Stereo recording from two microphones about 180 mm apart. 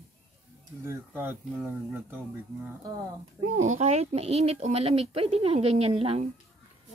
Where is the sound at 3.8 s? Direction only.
35° right (ahead or behind).